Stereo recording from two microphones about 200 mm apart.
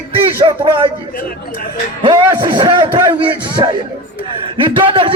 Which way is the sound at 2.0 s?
25° right (ahead or behind).